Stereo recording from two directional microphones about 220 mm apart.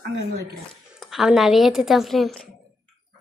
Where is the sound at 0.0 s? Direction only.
45° right (ahead or behind).